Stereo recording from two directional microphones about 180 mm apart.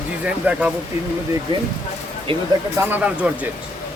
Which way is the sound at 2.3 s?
30° right (ahead or behind).